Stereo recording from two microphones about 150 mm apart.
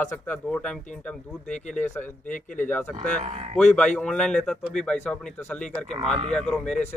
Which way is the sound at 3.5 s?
5° left (ahead or behind).